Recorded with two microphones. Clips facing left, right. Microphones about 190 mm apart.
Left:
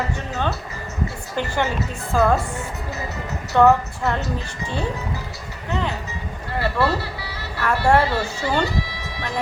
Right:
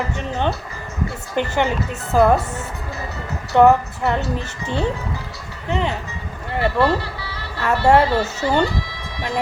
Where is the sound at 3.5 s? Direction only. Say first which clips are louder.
Right 2 dB; 15° right (ahead or behind).